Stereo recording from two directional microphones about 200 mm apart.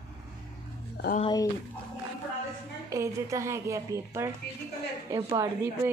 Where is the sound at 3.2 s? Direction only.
15° right (ahead or behind).